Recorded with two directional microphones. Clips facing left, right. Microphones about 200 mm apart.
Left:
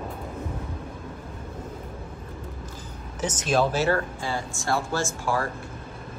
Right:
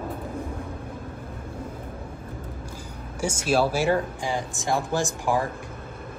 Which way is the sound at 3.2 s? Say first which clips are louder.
Right 1 dB; 10° right (ahead or behind).